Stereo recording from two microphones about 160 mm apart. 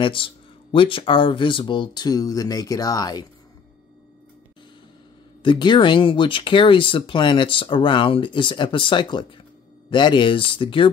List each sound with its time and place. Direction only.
0.0 s speech: 30° left (ahead or behind)
5.4 s speech: 30° left (ahead or behind)